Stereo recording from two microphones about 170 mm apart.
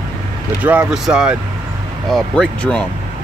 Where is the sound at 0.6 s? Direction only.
10° right (ahead or behind).